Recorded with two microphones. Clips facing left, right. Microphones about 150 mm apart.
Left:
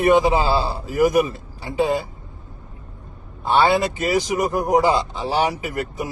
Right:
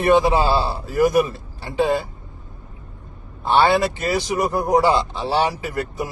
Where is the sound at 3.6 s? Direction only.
20° left (ahead or behind).